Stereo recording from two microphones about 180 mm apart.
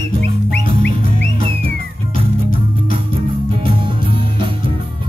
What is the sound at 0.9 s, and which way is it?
Music, 30° right (ahead or behind).